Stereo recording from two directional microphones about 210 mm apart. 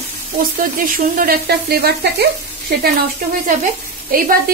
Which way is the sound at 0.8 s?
40° right (ahead or behind).